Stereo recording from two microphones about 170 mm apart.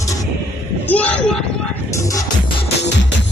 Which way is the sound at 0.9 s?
5° left (ahead or behind).